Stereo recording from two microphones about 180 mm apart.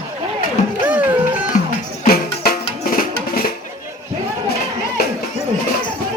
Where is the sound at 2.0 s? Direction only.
55° left (ahead or behind).